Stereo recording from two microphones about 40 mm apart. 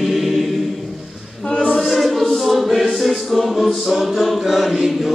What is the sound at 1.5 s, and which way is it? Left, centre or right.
Choir, left.